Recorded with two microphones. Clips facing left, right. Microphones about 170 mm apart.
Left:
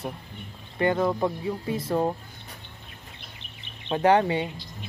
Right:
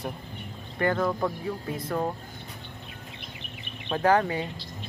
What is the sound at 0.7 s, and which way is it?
Speech, 15° left (ahead or behind).